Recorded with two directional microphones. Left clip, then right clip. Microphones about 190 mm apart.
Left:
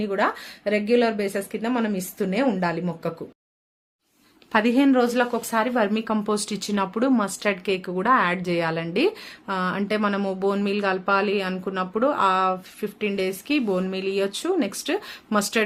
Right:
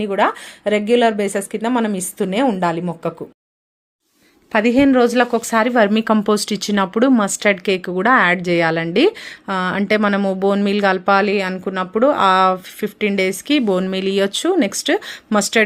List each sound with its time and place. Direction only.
0.0 s a woman's voice: 30° right (ahead or behind)
4.5 s a woman's voice: 25° right (ahead or behind)